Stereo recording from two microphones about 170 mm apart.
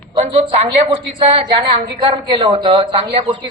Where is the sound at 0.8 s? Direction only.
30° right (ahead or behind).